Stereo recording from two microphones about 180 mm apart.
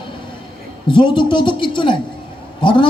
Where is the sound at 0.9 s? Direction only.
25° left (ahead or behind).